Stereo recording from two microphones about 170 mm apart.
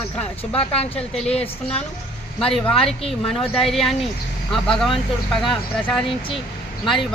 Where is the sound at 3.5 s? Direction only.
Centre (ahead or behind).